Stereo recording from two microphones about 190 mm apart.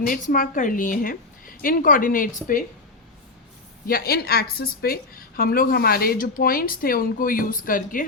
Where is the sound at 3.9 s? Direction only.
50° left (ahead or behind).